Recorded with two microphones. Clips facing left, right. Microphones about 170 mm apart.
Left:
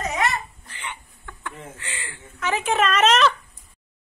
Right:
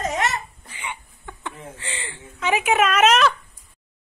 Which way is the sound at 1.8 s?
25° right (ahead or behind).